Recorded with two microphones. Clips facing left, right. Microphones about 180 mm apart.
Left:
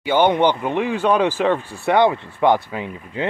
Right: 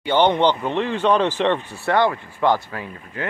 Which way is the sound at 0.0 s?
10° left (ahead or behind).